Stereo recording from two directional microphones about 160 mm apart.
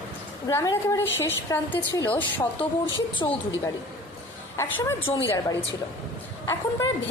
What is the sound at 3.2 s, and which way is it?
Speech, 25° left (ahead or behind).